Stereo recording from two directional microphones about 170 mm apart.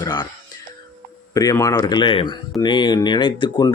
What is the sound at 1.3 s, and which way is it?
Speech, 20° left (ahead or behind).